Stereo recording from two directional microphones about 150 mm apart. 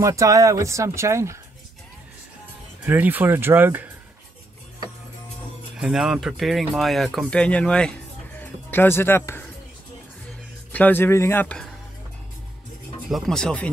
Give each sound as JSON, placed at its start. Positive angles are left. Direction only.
{"t": 0.0, "sound": "speech", "side_deg": -20}
{"t": 2.8, "sound": "speech", "side_deg": -10}
{"t": 5.8, "sound": "speech", "side_deg": -5}
{"t": 10.7, "sound": "speech", "side_deg": 10}
{"t": 13.1, "sound": "speech", "side_deg": 5}